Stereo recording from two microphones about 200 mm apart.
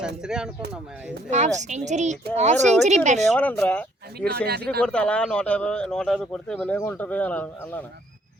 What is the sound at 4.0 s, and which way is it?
Speech, 55° right (ahead or behind).